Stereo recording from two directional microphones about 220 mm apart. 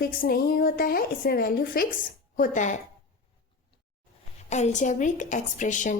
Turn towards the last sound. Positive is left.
turn(degrees=35)  # may be behind; listen again after turning